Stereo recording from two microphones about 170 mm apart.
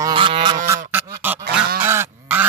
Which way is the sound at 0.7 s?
10° right (ahead or behind).